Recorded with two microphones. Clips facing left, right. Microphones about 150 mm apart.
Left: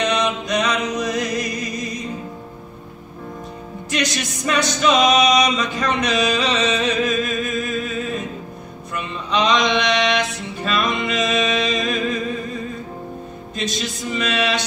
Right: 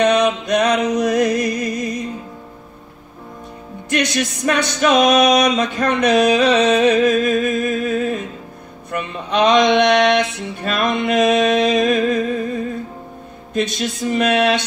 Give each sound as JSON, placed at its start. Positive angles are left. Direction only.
{"t": 0.0, "sound": "music", "side_deg": -60}
{"t": 3.9, "sound": "music", "side_deg": -60}
{"t": 13.6, "sound": "music", "side_deg": -55}